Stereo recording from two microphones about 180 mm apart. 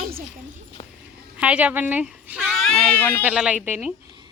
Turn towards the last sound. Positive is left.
turn(degrees=-10)  # may be behind; listen again after turning